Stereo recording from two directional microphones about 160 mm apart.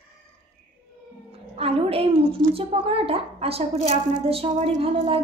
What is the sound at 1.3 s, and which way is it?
Speech, 35° right (ahead or behind).